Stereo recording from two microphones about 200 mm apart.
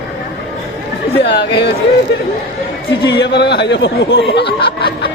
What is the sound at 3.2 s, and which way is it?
Speech, 60° left (ahead or behind).